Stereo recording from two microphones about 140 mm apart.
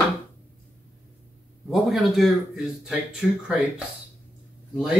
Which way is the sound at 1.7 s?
Centre (ahead or behind).